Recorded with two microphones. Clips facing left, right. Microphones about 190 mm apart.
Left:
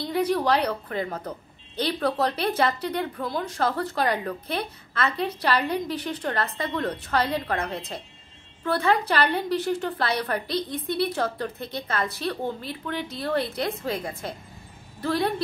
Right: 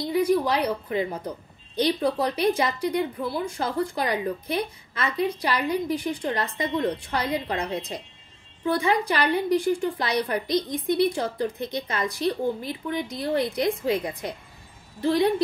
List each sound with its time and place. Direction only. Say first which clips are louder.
0.1 s a woman's voice: right 1 dB; 10° right (ahead or behind)